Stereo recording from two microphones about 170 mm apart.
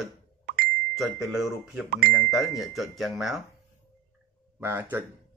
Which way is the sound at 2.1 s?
Centre (ahead or behind).